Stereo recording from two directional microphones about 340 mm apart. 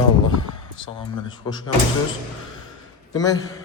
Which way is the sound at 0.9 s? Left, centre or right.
Centre.